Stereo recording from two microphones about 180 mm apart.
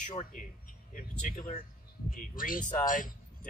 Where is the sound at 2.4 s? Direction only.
50° left (ahead or behind).